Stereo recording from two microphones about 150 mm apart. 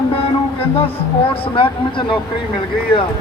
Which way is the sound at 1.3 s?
35° left (ahead or behind).